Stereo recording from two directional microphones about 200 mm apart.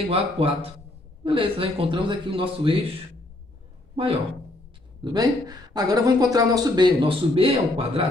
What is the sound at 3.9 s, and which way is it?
Speech, 30° right (ahead or behind).